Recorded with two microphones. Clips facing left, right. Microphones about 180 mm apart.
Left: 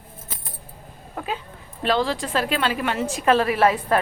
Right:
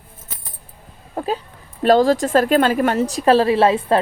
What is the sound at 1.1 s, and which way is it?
A woman's voice, 35° right (ahead or behind).